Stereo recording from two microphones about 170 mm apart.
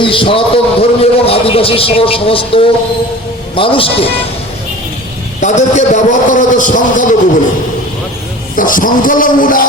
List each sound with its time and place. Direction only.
0.0 s a man's voice: 30° left (ahead or behind)
5.4 s a man's voice: 45° left (ahead or behind)
8.5 s a man's voice: 50° left (ahead or behind)